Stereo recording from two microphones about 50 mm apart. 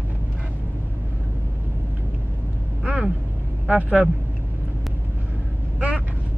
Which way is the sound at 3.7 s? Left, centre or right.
Right.